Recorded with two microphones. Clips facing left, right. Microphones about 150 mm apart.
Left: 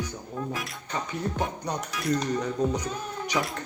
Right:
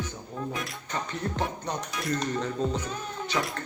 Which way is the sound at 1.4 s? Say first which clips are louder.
Left 1 dB; 10° left (ahead or behind).